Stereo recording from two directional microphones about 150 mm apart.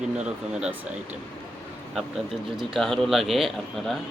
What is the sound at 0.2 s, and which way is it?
Speech, 5° right (ahead or behind).